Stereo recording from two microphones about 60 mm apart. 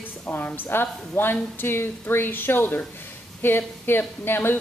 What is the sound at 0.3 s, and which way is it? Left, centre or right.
Speech, left.